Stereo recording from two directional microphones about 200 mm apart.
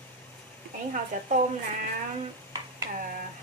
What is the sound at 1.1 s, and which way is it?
Speech, 40° right (ahead or behind).